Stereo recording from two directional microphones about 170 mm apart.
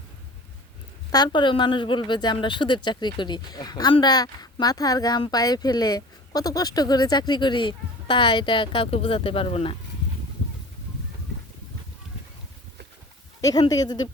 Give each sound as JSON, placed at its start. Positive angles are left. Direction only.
{"t": 1.1, "sound": "speech", "side_deg": 25}
{"t": 13.4, "sound": "speech", "side_deg": 20}